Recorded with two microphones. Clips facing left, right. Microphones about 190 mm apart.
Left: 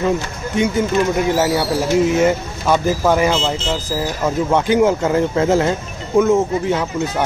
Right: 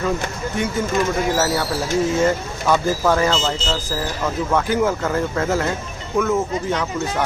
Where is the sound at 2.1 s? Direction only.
15° left (ahead or behind).